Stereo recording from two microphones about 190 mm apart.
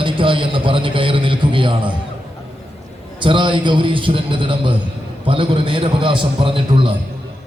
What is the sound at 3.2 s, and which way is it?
A man's voice, 25° right (ahead or behind).